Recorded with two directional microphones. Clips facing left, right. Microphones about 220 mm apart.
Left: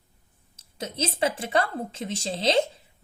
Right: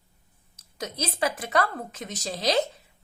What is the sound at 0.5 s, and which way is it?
A woman's voice, 30° left (ahead or behind).